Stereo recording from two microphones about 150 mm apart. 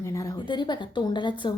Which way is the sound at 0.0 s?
20° left (ahead or behind).